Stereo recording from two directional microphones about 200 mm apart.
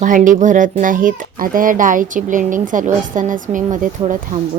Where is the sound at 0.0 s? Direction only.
40° right (ahead or behind).